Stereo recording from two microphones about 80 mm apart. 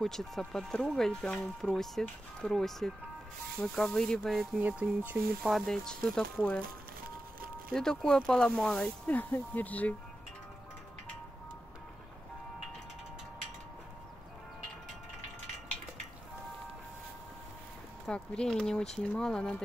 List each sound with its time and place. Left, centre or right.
0.0 s speech: centre
4.6 s speech: centre
5.4 s speech: centre
7.7 s speech: centre
18.0 s speech: centre